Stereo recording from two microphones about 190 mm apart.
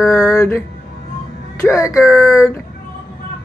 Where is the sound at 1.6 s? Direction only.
15° left (ahead or behind).